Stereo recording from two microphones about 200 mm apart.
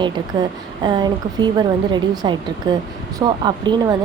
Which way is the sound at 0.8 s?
20° right (ahead or behind).